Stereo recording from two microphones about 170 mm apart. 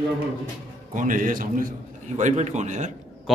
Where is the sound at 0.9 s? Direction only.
50° right (ahead or behind).